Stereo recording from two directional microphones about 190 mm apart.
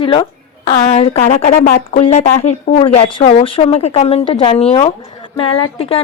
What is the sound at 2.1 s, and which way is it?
A woman's voice, 35° left (ahead or behind).